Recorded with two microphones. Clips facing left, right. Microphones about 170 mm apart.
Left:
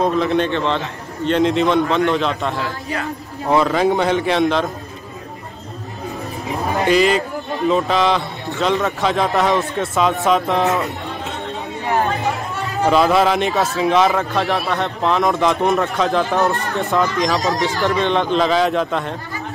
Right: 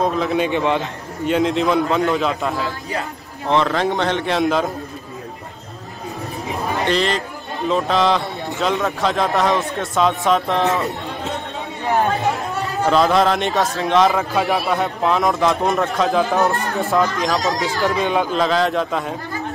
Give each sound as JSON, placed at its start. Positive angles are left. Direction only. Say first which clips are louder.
{"t": 0.0, "sound": "a man's voice", "louder": "left 2 dB", "side_deg": 0}
{"t": 0.5, "sound": "a man's voice", "louder": "right 1 dB", "side_deg": -15}
{"t": 6.9, "sound": "a man's voice", "louder": "left 7 dB", "side_deg": 5}
{"t": 12.8, "sound": "a man's voice", "louder": "left 1 dB", "side_deg": 5}